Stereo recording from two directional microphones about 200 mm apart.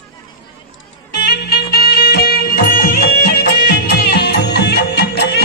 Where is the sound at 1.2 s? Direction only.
55° left (ahead or behind).